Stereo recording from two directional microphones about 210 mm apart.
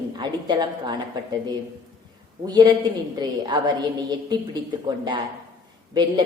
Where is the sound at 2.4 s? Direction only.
20° right (ahead or behind).